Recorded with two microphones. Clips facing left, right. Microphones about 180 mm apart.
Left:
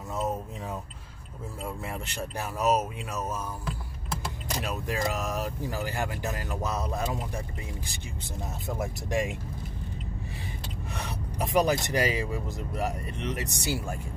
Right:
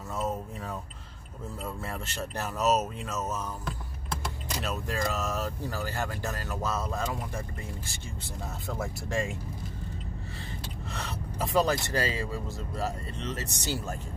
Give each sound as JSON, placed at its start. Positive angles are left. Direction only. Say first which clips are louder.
{"t": 1.6, "sound": "speech", "louder": "left 2 dB", "side_deg": 15}
{"t": 4.6, "sound": "speech", "louder": "left 1 dB", "side_deg": 15}
{"t": 10.9, "sound": "speech", "louder": "left 1 dB", "side_deg": 15}